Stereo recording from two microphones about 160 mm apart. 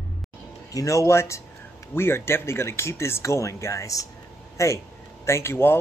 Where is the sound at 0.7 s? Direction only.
20° left (ahead or behind).